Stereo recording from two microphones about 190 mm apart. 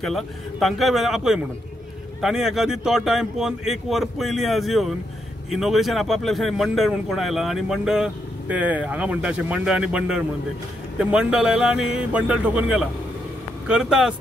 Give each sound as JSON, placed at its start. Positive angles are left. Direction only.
{"t": 0.0, "sound": "speech", "side_deg": 0}